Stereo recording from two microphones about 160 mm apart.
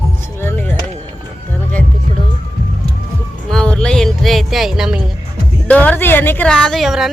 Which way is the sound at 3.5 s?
5° left (ahead or behind).